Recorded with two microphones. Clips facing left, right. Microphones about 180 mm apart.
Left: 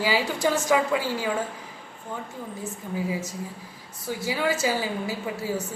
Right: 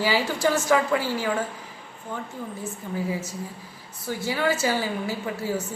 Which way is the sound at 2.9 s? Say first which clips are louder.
Even; 15° left (ahead or behind).